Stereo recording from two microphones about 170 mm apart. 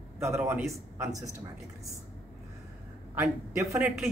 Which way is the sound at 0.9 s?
15° right (ahead or behind).